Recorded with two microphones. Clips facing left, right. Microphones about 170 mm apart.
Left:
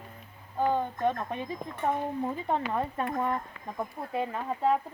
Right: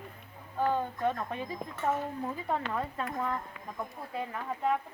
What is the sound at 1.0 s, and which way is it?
Speech, 20° left (ahead or behind).